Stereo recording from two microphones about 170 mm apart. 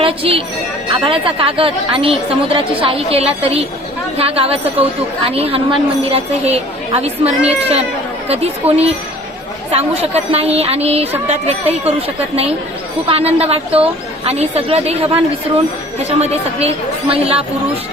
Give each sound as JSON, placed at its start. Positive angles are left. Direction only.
{"t": 0.0, "sound": "a woman's voice", "side_deg": -35}